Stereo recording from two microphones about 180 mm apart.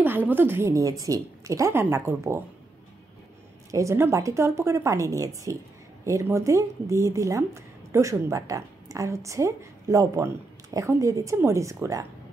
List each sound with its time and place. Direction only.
0.0 s speech: 10° right (ahead or behind)
3.7 s speech: 15° right (ahead or behind)